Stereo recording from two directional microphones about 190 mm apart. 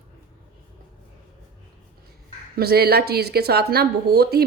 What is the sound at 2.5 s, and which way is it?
Speech, 55° right (ahead or behind).